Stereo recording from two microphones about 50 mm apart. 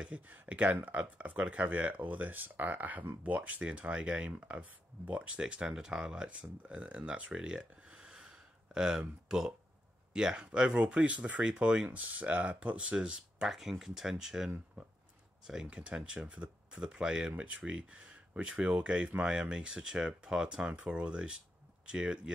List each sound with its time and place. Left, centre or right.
0.3 s speech: right; by 10.4 s centre
10.4 s speech: right
12.5 s speech: centre
13.5 s speech: centre
15.7 s speech: right